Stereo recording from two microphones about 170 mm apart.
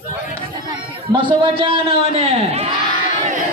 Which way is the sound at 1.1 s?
30° right (ahead or behind).